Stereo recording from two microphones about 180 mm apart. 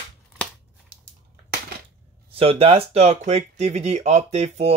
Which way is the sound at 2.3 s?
30° right (ahead or behind).